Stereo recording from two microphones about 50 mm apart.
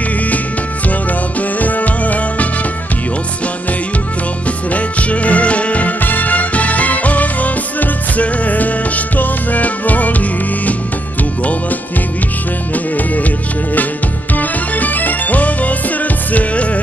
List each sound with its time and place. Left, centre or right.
1.6 s music: left
4.7 s music: left
12.7 s music: left
14.3 s music: left